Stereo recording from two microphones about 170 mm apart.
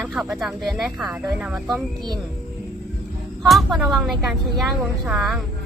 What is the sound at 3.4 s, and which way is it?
Speech, centre (ahead or behind).